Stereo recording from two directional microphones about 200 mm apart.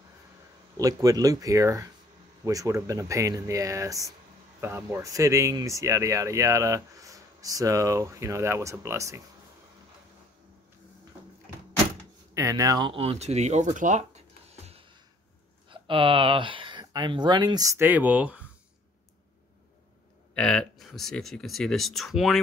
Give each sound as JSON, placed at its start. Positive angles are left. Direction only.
{"t": 0.7, "sound": "speech", "side_deg": -15}
{"t": 12.4, "sound": "speech", "side_deg": -15}
{"t": 20.3, "sound": "speech", "side_deg": 5}